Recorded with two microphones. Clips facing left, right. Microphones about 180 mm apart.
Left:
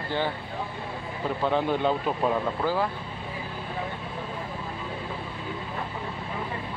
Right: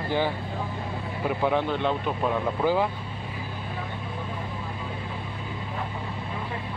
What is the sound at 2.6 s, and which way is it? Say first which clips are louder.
Speech: right 5 dB; 15° right (ahead or behind).